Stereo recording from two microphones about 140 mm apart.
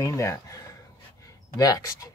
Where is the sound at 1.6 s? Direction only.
25° left (ahead or behind).